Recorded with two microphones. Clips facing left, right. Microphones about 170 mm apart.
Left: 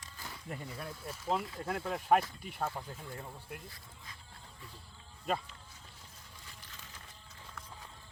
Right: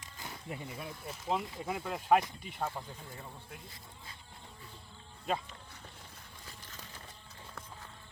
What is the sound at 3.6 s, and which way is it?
Speech, 20° right (ahead or behind).